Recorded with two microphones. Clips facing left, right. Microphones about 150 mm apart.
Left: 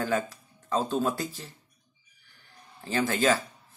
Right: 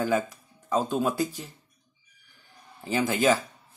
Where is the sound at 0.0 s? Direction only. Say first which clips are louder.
Right 2 dB; 15° right (ahead or behind).